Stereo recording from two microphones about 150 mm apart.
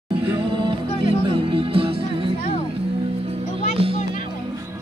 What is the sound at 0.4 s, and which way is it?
Music, 35° right (ahead or behind).